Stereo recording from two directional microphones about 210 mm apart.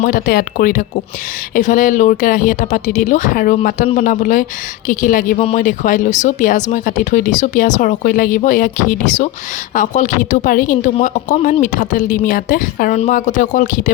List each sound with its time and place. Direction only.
0.0 s speech: 40° left (ahead or behind)